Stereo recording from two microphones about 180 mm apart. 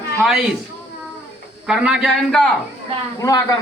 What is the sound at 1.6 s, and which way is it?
Speech, 5° right (ahead or behind).